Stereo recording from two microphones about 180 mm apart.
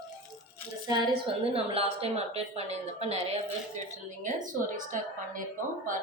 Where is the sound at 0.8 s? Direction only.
25° right (ahead or behind); by 4.8 s 45° right (ahead or behind).